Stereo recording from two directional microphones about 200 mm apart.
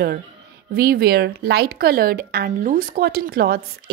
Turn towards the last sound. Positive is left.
turn(degrees=-50)  # may be behind; listen again after turning